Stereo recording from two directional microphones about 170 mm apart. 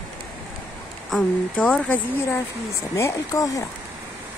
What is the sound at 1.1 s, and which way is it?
Speech, 5° left (ahead or behind).